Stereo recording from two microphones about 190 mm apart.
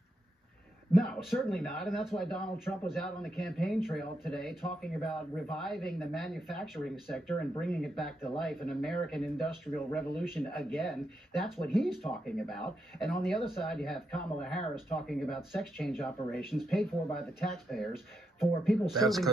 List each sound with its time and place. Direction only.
0.9 s speech: centre (ahead or behind)